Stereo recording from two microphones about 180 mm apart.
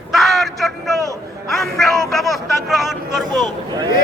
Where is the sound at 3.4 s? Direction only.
25° right (ahead or behind).